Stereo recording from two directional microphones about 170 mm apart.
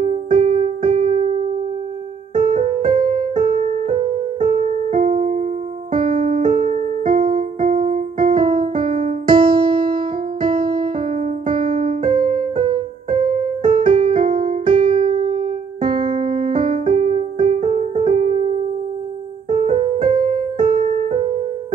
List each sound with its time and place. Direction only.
0.0 s music: 35° right (ahead or behind)
2.3 s music: 30° right (ahead or behind)
6.5 s music: 35° right (ahead or behind)
7.2 s music: 30° right (ahead or behind)
7.9 s keyboard: 50° right (ahead or behind)
8.4 s keyboard: 30° right (ahead or behind)
8.9 s music: 30° right (ahead or behind)
11.4 s keyboard: 55° right (ahead or behind)
12.0 s music: 30° right (ahead or behind)
15.9 s keyboard: 25° right (ahead or behind)
16.6 s music: 30° right (ahead or behind)
19.8 s music: 30° right (ahead or behind)